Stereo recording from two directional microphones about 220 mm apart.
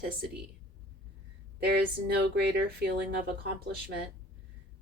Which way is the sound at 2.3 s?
45° right (ahead or behind).